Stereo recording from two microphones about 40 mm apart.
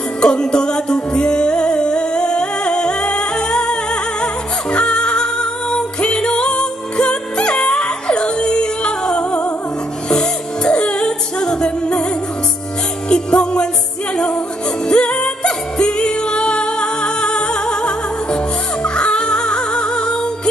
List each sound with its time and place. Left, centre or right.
0.2 s music: left
13.1 s music: left